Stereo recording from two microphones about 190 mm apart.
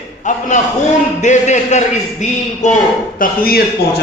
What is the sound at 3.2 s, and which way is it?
Speech, 50° left (ahead or behind).